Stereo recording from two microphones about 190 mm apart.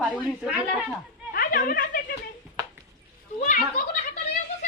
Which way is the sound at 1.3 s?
50° left (ahead or behind).